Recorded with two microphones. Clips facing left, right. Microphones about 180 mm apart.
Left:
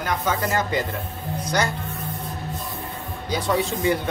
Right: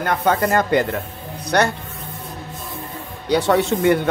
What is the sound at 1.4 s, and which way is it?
Music, 65° right (ahead or behind).